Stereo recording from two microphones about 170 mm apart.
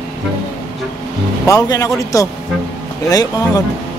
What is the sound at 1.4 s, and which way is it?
Speech, 20° left (ahead or behind).